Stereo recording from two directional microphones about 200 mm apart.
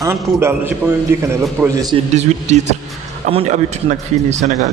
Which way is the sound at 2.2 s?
35° right (ahead or behind).